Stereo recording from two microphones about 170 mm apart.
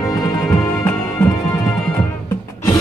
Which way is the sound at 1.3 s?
20° left (ahead or behind).